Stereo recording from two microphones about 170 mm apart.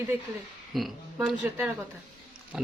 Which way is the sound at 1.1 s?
10° right (ahead or behind).